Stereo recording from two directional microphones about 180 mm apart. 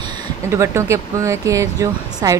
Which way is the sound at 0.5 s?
15° right (ahead or behind).